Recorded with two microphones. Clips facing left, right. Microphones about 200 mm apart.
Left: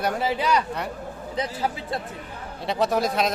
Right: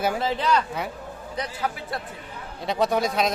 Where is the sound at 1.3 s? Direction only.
25° left (ahead or behind).